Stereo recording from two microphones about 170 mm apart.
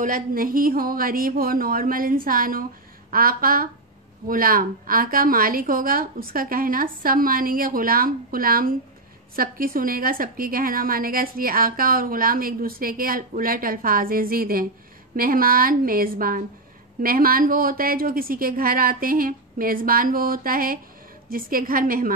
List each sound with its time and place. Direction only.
0.0 s a woman's voice: 55° right (ahead or behind)